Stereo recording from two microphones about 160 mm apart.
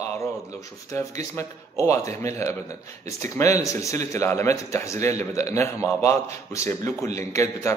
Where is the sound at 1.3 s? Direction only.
20° left (ahead or behind).